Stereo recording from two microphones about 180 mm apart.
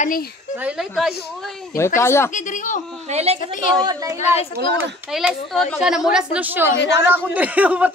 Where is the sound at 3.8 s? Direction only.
25° right (ahead or behind).